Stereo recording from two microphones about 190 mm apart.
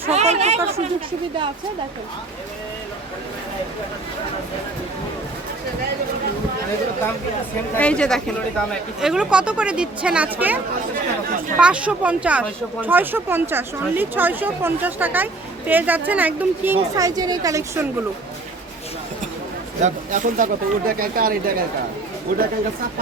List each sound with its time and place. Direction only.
0.0 s speech: 35° right (ahead or behind)
7.8 s speech: 5° left (ahead or behind)
11.6 s speech: 5° right (ahead or behind)
19.8 s speech: 40° right (ahead or behind)